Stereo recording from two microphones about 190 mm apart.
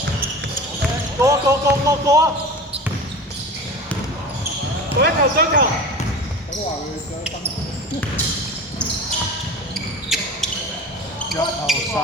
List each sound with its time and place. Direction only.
1.2 s speech: 15° right (ahead or behind)
4.9 s speech: 60° right (ahead or behind)
10.1 s basketball bounce: centre (ahead or behind)
11.3 s speech: centre (ahead or behind)